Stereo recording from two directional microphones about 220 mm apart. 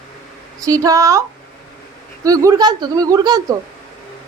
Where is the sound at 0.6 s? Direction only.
15° right (ahead or behind).